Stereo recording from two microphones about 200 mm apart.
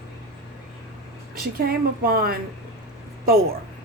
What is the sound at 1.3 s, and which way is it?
Speech, 45° right (ahead or behind).